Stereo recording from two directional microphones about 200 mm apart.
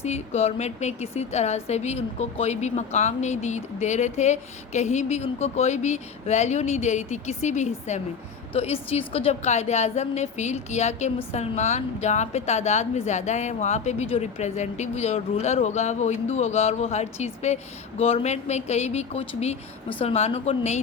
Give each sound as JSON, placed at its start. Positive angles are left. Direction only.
{"t": 0.0, "sound": "a woman's voice", "side_deg": 30}